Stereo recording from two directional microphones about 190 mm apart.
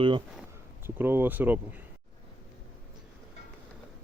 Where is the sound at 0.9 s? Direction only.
10° right (ahead or behind).